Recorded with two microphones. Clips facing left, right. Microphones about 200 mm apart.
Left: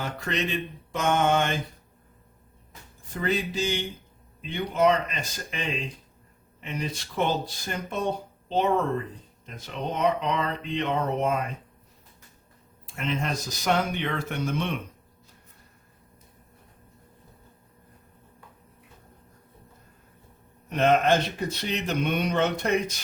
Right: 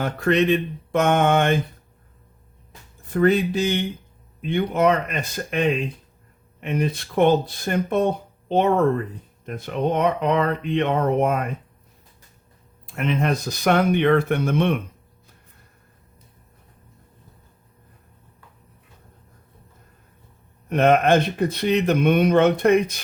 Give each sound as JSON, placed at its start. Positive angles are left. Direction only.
{"t": 0.0, "sound": "speech", "side_deg": -55}
{"t": 3.1, "sound": "speech", "side_deg": -60}
{"t": 12.9, "sound": "speech", "side_deg": -60}
{"t": 20.7, "sound": "speech", "side_deg": -55}